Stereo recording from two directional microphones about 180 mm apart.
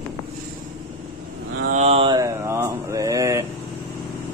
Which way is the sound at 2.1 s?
15° right (ahead or behind).